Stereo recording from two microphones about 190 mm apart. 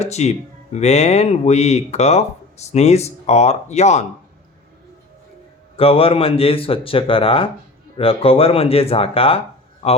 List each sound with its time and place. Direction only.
0.0 s speech: 35° left (ahead or behind)
5.7 s speech: 30° left (ahead or behind)